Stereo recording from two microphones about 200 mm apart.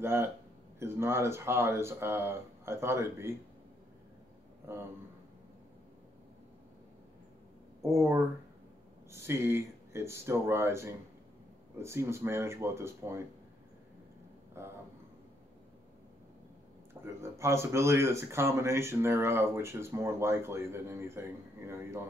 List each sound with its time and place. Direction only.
0.0 s speech: 10° right (ahead or behind)
4.7 s speech: 10° right (ahead or behind)
7.8 s speech: 15° right (ahead or behind)
14.6 s speech: 15° right (ahead or behind)
17.0 s speech: 15° right (ahead or behind)